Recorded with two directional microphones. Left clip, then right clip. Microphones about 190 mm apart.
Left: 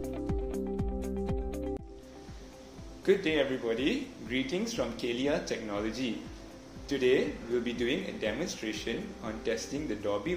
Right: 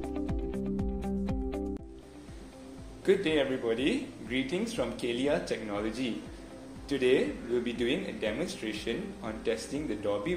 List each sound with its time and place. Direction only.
0.3 s music: centre (ahead or behind)
3.1 s speech: 5° right (ahead or behind)